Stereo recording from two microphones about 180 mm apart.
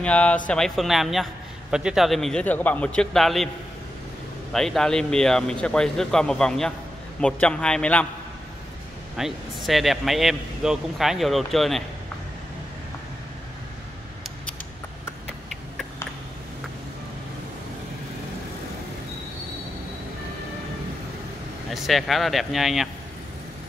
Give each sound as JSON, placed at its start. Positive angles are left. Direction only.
{"t": 0.0, "sound": "a man's voice", "side_deg": 5}
{"t": 4.5, "sound": "a man's voice", "side_deg": 0}
{"t": 9.1, "sound": "speech", "side_deg": 0}
{"t": 21.7, "sound": "speech", "side_deg": 0}